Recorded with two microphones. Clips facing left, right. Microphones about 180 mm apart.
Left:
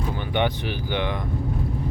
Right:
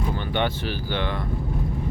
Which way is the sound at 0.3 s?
15° left (ahead or behind).